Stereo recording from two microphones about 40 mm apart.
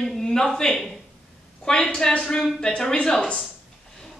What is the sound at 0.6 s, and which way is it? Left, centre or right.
A woman's voice, centre.